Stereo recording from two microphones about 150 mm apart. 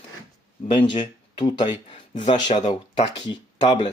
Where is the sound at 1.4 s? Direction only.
30° left (ahead or behind).